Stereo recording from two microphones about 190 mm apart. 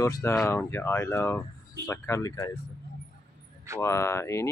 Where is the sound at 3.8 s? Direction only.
15° left (ahead or behind).